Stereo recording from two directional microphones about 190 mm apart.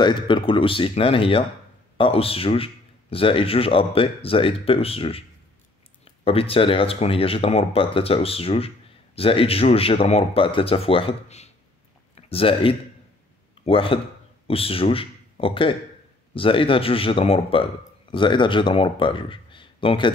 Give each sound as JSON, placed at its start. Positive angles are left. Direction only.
{"t": 0.0, "sound": "speech", "side_deg": 25}